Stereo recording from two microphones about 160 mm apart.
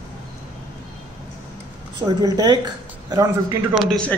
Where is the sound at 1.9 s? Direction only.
25° right (ahead or behind).